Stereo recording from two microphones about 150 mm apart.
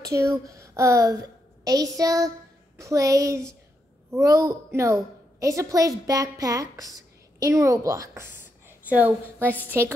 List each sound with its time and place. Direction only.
0.0 s a woman's voice: 20° right (ahead or behind)